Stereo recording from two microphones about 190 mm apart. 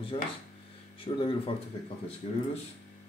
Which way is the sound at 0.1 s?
30° left (ahead or behind).